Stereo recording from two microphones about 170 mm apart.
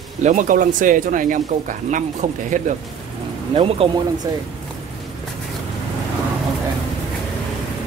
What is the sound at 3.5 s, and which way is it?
Speech, 35° right (ahead or behind).